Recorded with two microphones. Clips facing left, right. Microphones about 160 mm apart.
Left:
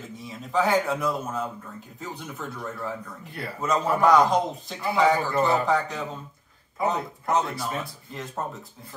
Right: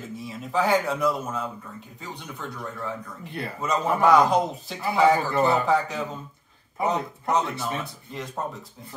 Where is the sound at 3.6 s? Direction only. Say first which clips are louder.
Even; centre (ahead or behind).